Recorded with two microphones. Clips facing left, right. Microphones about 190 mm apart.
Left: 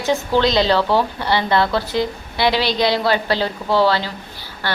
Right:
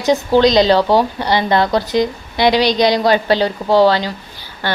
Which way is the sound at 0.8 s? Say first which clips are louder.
Right 4 dB; 40° right (ahead or behind).